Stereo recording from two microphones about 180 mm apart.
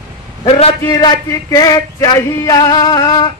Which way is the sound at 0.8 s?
20° left (ahead or behind).